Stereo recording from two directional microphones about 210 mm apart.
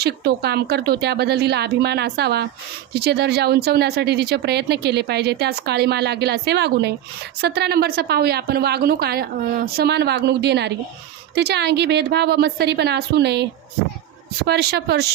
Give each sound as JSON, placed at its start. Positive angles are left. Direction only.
{"t": 0.0, "sound": "speech", "side_deg": -50}